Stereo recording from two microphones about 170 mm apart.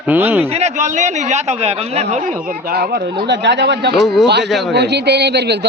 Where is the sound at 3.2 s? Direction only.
90° right; by 3.9 s 75° right (ahead or behind).